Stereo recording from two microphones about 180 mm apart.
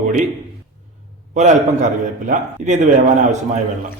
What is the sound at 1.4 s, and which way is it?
A man's voice, 40° right (ahead or behind).